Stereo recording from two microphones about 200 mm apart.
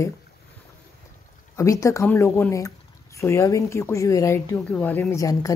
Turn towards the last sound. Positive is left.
turn(degrees=15)  # may be behind; listen again after turning